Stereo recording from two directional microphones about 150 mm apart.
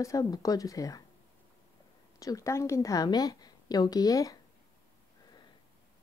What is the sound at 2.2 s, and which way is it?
Speech, 20° left (ahead or behind).